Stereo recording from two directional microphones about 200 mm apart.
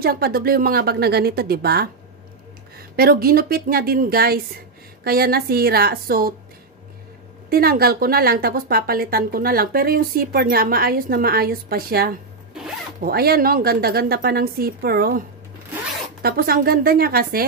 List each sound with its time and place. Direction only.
0.0 s a woman's voice: 50° right (ahead or behind)
7.4 s a woman's voice: 50° right (ahead or behind)